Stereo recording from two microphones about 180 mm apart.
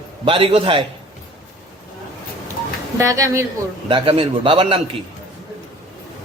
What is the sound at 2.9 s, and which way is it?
Speech, 20° right (ahead or behind).